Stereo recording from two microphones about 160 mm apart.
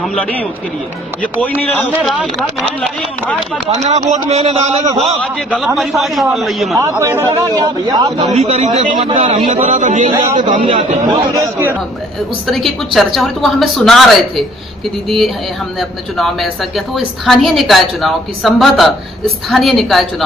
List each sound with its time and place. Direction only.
0.0 s speech: 5° left (ahead or behind)
2.0 s a woman's voice: centre (ahead or behind)
3.6 s speech: 45° right (ahead or behind)
5.0 s a woman's voice: centre (ahead or behind)
6.8 s a man's voice: 20° right (ahead or behind)
8.2 s a man's voice: 40° right (ahead or behind)
10.6 s speech: 35° right (ahead or behind)
11.3 s a man's voice: 20° right (ahead or behind)
12.4 s a woman's voice: centre (ahead or behind)